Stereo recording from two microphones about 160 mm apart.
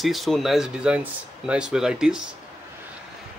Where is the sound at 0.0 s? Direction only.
Centre (ahead or behind).